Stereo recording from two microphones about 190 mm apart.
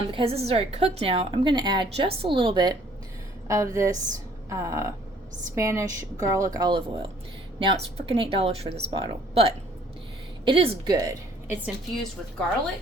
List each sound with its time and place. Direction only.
0.1 s a woman's voice: 30° right (ahead or behind)
10.9 s a woman's voice: 15° right (ahead or behind)